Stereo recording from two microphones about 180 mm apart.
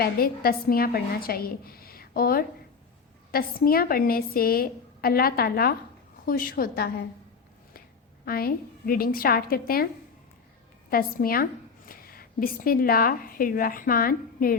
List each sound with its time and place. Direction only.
0.0 s a woman's voice: 55° left (ahead or behind)
8.2 s a woman's voice: 55° left (ahead or behind)